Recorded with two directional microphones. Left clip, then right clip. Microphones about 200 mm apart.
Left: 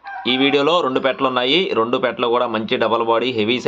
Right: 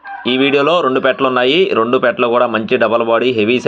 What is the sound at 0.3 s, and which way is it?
A man's voice, 10° right (ahead or behind).